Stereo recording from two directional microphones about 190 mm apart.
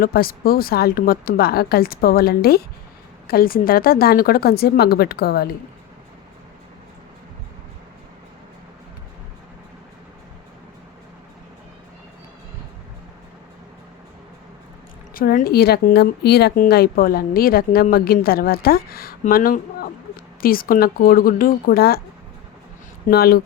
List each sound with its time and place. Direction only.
0.0 s speech: 50° left (ahead or behind)
15.1 s speech: 50° left (ahead or behind)
23.0 s speech: 55° left (ahead or behind)